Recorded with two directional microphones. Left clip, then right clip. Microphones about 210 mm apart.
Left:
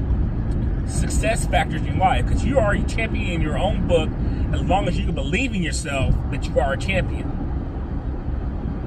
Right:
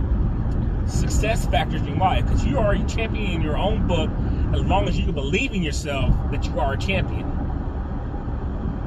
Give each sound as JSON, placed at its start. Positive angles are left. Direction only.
{"t": 0.9, "sound": "speech", "side_deg": 15}